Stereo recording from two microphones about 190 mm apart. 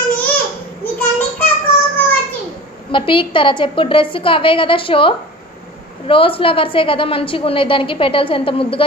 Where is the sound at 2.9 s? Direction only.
25° left (ahead or behind).